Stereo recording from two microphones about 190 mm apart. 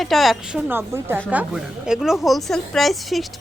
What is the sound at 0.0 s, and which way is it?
A woman's voice, centre (ahead or behind).